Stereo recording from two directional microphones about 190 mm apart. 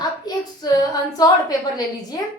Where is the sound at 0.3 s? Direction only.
20° left (ahead or behind).